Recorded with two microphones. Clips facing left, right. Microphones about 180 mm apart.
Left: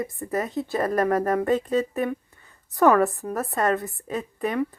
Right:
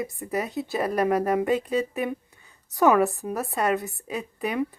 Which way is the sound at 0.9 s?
15° right (ahead or behind).